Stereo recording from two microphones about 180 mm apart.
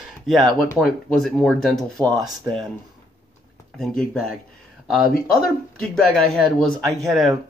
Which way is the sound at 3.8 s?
5° left (ahead or behind).